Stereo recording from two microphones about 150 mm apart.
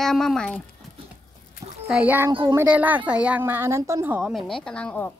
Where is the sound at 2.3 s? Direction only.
35° right (ahead or behind).